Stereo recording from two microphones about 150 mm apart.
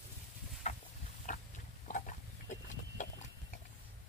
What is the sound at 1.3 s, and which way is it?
Pig, 55° left (ahead or behind).